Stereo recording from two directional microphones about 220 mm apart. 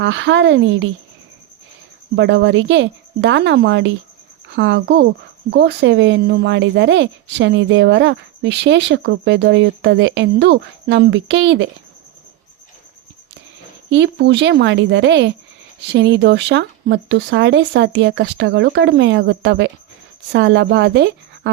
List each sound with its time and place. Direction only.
0.0 s speech: 55° right (ahead or behind)
2.1 s a woman's voice: 55° right (ahead or behind)
13.9 s speech: 50° right (ahead or behind)